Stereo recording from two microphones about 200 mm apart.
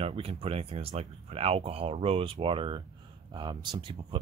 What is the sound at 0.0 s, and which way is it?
Speech, 30° right (ahead or behind).